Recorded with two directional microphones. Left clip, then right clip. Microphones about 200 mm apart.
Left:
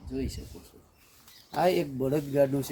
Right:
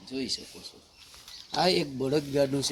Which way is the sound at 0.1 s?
15° left (ahead or behind).